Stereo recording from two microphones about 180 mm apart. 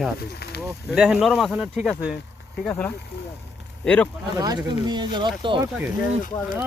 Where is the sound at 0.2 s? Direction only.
60° left (ahead or behind).